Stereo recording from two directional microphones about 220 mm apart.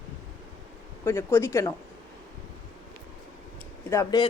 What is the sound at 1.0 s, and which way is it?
Speech, 10° left (ahead or behind).